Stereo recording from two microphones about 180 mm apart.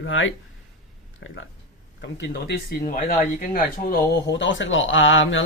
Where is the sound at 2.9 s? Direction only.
50° left (ahead or behind); by 5.4 s 90° left.